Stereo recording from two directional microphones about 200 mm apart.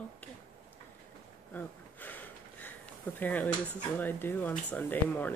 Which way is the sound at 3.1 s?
10° left (ahead or behind).